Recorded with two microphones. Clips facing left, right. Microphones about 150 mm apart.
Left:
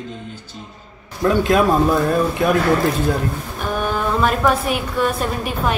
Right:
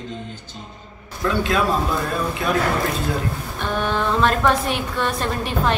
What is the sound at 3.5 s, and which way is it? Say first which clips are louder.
A woman's voice: even; 10° left (ahead or behind).